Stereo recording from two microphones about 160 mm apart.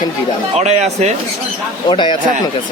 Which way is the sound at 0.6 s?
45° right (ahead or behind).